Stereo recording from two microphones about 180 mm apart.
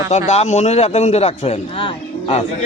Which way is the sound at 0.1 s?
40° left (ahead or behind).